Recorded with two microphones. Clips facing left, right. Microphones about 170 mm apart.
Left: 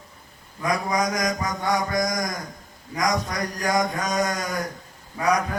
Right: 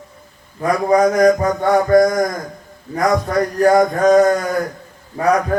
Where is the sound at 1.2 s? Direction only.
55° right (ahead or behind).